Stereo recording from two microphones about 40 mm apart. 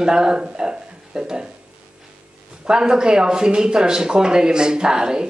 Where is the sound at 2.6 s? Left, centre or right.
Centre.